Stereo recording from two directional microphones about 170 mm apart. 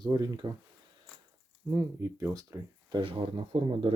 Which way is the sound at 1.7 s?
15° right (ahead or behind).